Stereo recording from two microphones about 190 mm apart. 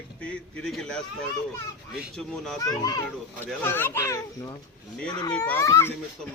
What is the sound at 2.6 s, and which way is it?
A child's voice, 20° left (ahead or behind).